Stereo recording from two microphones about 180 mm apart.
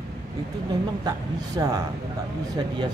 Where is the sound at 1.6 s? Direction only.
15° right (ahead or behind).